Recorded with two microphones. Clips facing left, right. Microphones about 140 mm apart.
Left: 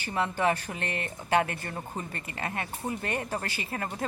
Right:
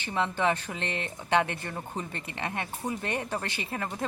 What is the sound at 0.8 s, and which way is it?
Speech, 50° left (ahead or behind).